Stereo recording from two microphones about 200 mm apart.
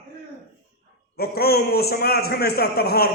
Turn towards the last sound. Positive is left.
turn(degrees=50)  # may be behind; listen again after turning